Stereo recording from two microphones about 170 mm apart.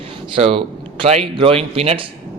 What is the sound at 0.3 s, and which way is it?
A man's voice, 35° right (ahead or behind).